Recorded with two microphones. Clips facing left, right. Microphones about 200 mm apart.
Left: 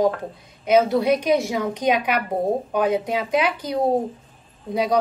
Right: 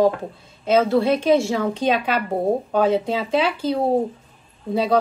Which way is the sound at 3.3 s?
30° right (ahead or behind).